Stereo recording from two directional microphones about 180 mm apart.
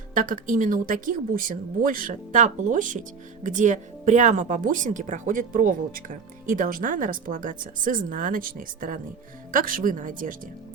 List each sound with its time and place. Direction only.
0.1 s speech: 50° right (ahead or behind)